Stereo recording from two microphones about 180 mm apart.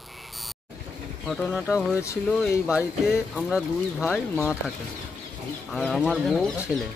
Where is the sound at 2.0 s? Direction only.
15° left (ahead or behind).